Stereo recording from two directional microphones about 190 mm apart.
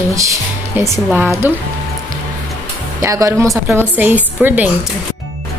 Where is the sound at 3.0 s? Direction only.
15° right (ahead or behind).